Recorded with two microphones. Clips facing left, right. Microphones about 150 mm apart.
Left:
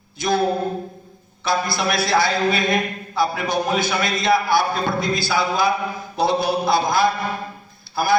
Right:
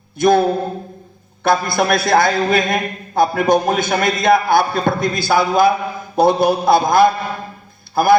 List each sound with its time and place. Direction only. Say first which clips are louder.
0.2 s a man's voice: right 8 dB; 55° right (ahead or behind)
1.5 s a man's voice: right 6 dB; 55° right (ahead or behind)